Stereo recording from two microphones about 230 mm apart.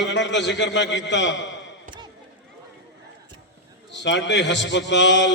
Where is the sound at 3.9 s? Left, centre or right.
Left.